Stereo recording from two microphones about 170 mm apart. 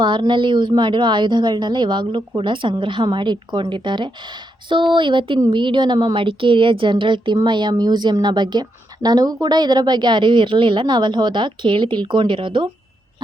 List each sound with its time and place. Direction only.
0.0 s a woman's voice: 25° right (ahead or behind)